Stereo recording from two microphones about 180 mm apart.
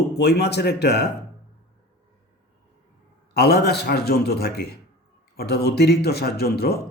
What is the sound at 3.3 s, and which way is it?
Speech, 60° left (ahead or behind).